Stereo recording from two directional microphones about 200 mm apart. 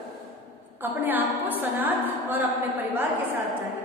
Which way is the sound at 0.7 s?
10° right (ahead or behind).